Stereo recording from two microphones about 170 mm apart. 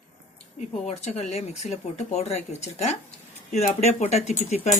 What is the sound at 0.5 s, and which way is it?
Speech, 40° left (ahead or behind).